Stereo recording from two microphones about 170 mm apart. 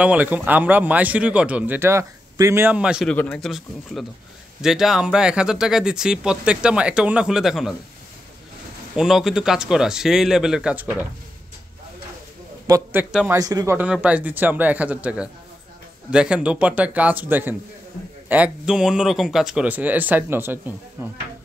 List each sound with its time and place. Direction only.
0.0 s speech: 10° right (ahead or behind)
3.1 s speech: 5° left (ahead or behind)
8.9 s speech: centre (ahead or behind)
12.6 s a man's voice: 20° right (ahead or behind)
14.0 s speech: 10° right (ahead or behind)